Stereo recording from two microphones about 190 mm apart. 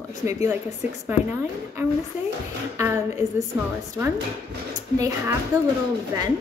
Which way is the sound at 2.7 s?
15° right (ahead or behind).